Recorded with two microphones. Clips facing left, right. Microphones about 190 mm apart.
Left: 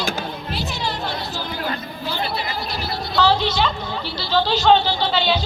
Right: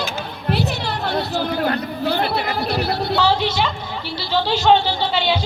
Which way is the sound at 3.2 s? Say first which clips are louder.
Left 3 dB; 10° right (ahead or behind).